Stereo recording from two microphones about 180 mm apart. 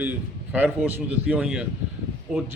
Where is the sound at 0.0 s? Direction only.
10° right (ahead or behind).